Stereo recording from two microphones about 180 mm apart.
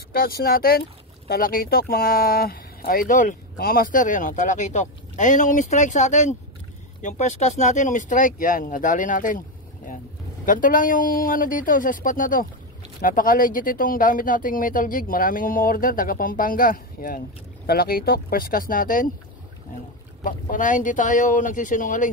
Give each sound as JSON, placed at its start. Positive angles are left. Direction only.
{"t": 0.1, "sound": "speech", "side_deg": 55}
{"t": 10.4, "sound": "speech", "side_deg": 50}
{"t": 20.2, "sound": "speech", "side_deg": 45}